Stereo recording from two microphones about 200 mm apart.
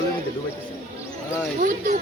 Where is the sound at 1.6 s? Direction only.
40° right (ahead or behind).